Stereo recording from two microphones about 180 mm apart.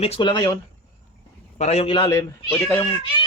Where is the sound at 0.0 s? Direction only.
30° left (ahead or behind).